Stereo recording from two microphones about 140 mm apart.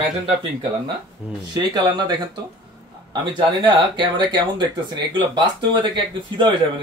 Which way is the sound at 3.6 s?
35° right (ahead or behind).